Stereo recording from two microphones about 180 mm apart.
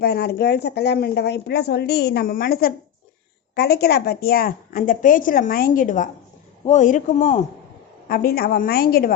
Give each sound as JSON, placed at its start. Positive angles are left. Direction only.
{"t": 0.0, "sound": "a woman's voice", "side_deg": 60}
{"t": 8.0, "sound": "speech", "side_deg": 55}